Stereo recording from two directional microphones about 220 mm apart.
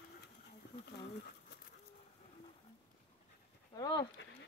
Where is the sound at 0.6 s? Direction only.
50° left (ahead or behind).